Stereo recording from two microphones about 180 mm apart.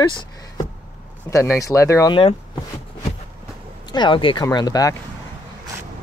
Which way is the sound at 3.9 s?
25° left (ahead or behind).